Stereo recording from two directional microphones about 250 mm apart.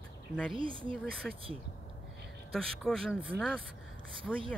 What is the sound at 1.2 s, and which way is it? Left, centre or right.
Speech, centre.